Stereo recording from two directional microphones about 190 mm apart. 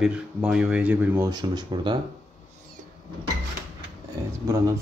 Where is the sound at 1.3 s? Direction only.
20° right (ahead or behind).